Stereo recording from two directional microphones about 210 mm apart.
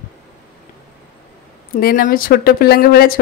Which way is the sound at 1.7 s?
45° left (ahead or behind).